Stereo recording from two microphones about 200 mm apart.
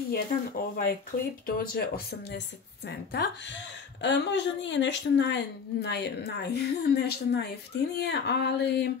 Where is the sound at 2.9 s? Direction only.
60° left (ahead or behind).